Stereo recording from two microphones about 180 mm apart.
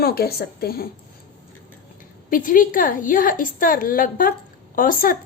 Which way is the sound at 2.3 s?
50° left (ahead or behind).